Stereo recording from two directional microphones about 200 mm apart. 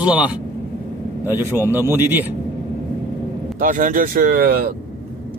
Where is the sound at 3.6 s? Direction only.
40° right (ahead or behind).